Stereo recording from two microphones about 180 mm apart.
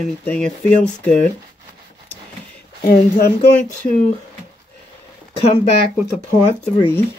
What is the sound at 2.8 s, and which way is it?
Speech, 55° left (ahead or behind).